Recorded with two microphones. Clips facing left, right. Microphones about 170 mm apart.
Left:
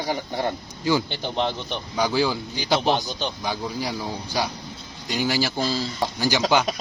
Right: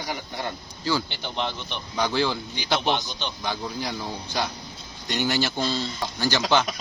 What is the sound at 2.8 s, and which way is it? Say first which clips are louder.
Speech: left 3 dB; 35° left (ahead or behind).